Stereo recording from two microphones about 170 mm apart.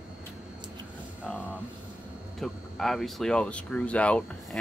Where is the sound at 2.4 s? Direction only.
Centre (ahead or behind).